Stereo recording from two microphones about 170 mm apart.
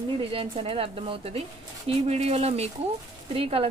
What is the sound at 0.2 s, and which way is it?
A woman's voice, 35° right (ahead or behind).